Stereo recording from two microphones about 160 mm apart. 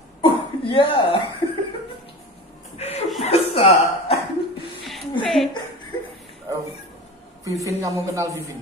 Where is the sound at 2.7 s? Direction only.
40° left (ahead or behind).